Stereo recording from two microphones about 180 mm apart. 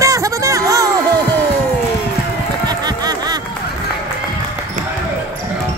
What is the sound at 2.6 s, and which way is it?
Run, 20° right (ahead or behind).